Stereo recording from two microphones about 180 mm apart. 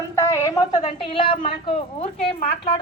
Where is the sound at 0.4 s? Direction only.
20° left (ahead or behind).